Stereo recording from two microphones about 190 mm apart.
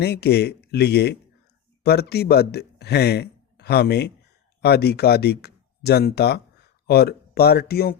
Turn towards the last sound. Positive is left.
turn(degrees=55)  # may be behind; listen again after turning